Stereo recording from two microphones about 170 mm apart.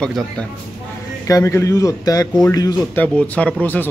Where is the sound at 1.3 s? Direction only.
20° left (ahead or behind).